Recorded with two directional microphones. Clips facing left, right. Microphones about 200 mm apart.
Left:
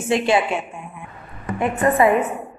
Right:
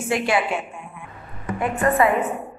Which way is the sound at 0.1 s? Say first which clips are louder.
Left 4 dB; 25° left (ahead or behind).